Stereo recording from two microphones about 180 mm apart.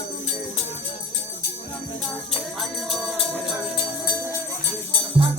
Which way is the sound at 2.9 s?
Centre (ahead or behind).